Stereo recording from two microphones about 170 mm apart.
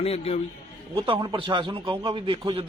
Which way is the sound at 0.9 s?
30° right (ahead or behind).